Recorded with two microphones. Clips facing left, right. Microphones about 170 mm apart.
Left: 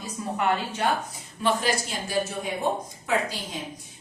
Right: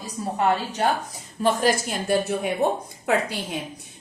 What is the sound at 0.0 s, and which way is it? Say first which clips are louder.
Speech: right 3 dB; 35° right (ahead or behind).